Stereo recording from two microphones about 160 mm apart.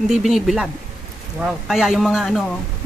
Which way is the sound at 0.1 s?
Centre (ahead or behind).